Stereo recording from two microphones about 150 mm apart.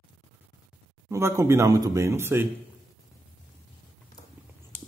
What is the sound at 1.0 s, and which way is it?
Speech, 20° right (ahead or behind).